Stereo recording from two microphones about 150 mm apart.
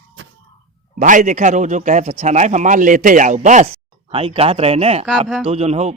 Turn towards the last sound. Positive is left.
turn(degrees=-45)  # may be behind; listen again after turning